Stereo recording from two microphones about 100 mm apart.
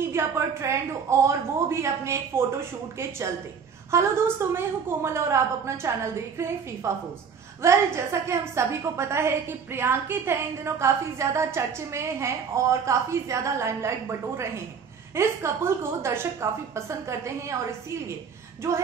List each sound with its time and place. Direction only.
0.1 s a woman's voice: 25° right (ahead or behind)
3.9 s a woman's voice: 30° right (ahead or behind)